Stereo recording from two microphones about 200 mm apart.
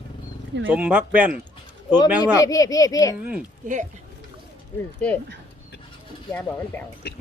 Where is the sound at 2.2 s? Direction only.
15° left (ahead or behind).